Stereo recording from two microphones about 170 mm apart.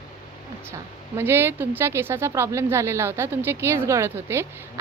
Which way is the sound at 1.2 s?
15° right (ahead or behind).